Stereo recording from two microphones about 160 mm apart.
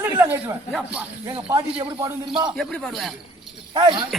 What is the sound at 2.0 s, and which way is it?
Speech, 25° right (ahead or behind).